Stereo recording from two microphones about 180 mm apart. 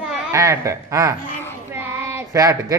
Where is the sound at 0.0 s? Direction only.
15° right (ahead or behind).